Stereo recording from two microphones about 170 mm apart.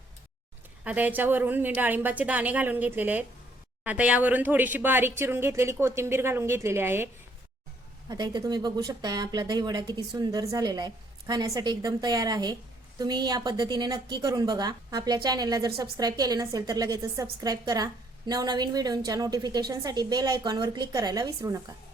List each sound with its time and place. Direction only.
0.9 s speech: 10° right (ahead or behind)
8.1 s a woman's voice: 25° right (ahead or behind)